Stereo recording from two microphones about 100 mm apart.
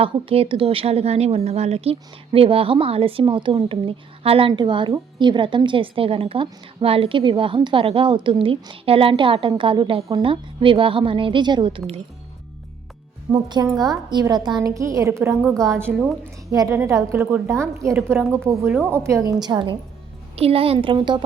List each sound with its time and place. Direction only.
0.0 s a woman's voice: 65° right (ahead or behind); by 11.7 s 50° right (ahead or behind)
13.3 s a woman's voice: 45° right (ahead or behind)
14.6 s a woman's voice: 30° right (ahead or behind)
19.2 s a woman's voice: 45° right (ahead or behind)
20.3 s a woman's voice: 80° right
20.7 s a woman's voice: 50° right (ahead or behind)